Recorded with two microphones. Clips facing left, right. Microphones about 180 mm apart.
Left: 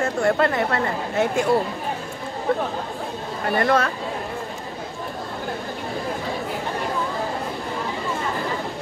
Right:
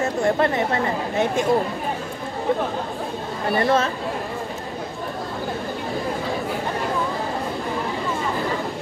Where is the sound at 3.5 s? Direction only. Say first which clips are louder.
Even; 25° right (ahead or behind).